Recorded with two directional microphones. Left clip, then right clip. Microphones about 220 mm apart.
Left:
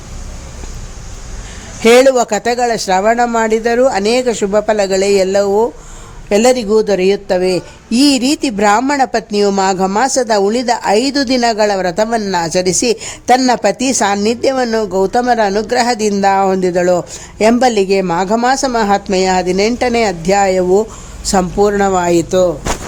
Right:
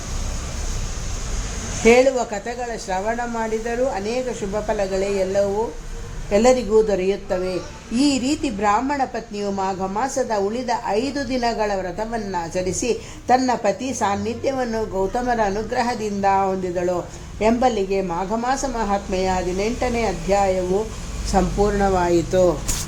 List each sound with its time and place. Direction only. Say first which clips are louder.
1.8 s speech: left 7 dB; 40° left (ahead or behind)